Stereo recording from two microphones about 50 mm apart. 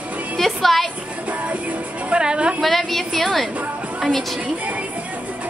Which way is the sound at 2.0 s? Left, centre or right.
Centre.